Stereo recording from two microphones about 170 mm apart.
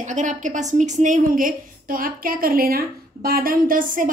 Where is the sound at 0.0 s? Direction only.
45° right (ahead or behind).